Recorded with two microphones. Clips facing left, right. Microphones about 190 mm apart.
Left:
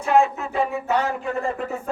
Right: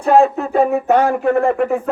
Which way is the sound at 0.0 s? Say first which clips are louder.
Right 6 dB; 35° right (ahead or behind).